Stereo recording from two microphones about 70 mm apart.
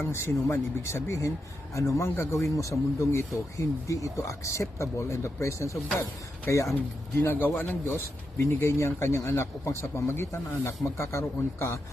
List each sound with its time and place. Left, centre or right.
0.1 s speech: left